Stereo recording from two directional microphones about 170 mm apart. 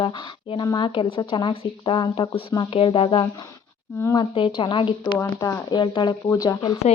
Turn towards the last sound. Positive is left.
turn(degrees=20)  # may be behind; listen again after turning